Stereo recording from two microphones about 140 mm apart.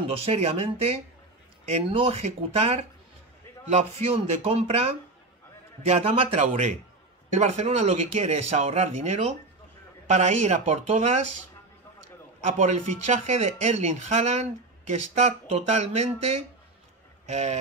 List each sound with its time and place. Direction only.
0.0 s speech: 45° right (ahead or behind)
12.4 s speech: 60° right (ahead or behind)